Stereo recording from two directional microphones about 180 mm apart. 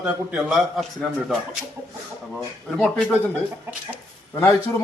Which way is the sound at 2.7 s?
Centre (ahead or behind).